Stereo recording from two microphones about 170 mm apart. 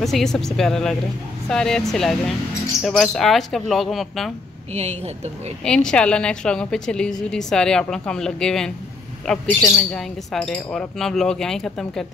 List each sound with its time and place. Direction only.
0.0 s speech: centre (ahead or behind)
4.7 s a woman's voice: 40° right (ahead or behind)
5.6 s speech: 5° left (ahead or behind)
9.6 s speech: 15° left (ahead or behind)
9.9 s speech: 5° left (ahead or behind)